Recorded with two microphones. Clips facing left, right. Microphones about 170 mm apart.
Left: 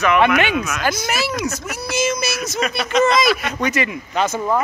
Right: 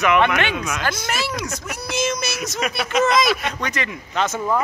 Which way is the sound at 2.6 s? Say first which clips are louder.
Left 3 dB; 10° right (ahead or behind).